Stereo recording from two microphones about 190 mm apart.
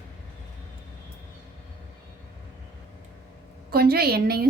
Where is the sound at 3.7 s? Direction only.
55° right (ahead or behind).